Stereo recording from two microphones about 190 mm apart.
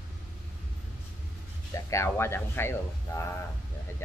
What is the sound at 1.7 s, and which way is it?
Speech, 15° left (ahead or behind).